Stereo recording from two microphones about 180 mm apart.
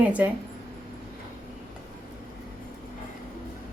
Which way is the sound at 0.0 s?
10° right (ahead or behind).